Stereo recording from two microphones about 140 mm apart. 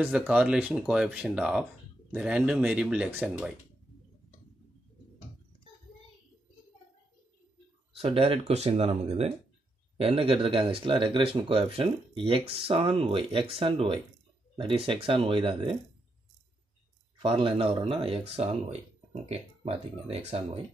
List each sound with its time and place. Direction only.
0.0 s speech: 5° right (ahead or behind)
7.9 s speech: 45° right (ahead or behind)
17.2 s speech: 40° right (ahead or behind)